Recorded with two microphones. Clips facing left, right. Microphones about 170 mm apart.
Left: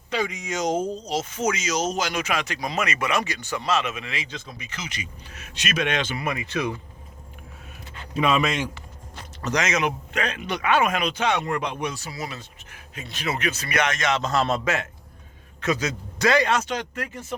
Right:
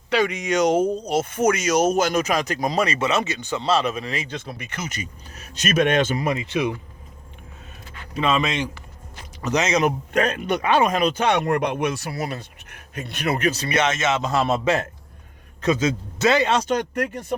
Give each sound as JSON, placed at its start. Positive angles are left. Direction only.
{"t": 0.1, "sound": "speech", "side_deg": -75}
{"t": 4.3, "sound": "speech", "side_deg": -60}
{"t": 6.5, "sound": "speech", "side_deg": -20}
{"t": 8.1, "sound": "speech", "side_deg": 10}
{"t": 9.4, "sound": "speech", "side_deg": -25}
{"t": 10.1, "sound": "speech", "side_deg": -45}
{"t": 10.6, "sound": "speech", "side_deg": -35}
{"t": 11.2, "sound": "speech", "side_deg": -55}
{"t": 13.4, "sound": "speech", "side_deg": -35}
{"t": 16.6, "sound": "speech", "side_deg": -60}